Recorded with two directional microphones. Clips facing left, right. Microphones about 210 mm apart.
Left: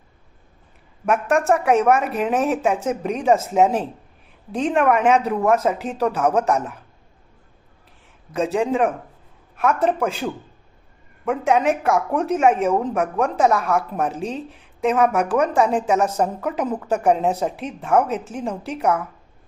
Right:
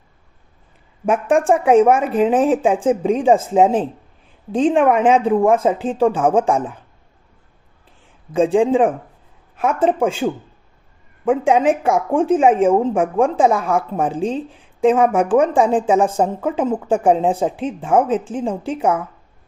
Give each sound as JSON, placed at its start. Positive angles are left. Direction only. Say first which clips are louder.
{"t": 1.0, "sound": "a woman's voice", "louder": "right 3 dB", "side_deg": -30}
{"t": 8.4, "sound": "a woman's voice", "louder": "right 6 dB", "side_deg": -30}
{"t": 11.4, "sound": "a woman's voice", "louder": "right 1 dB", "side_deg": -30}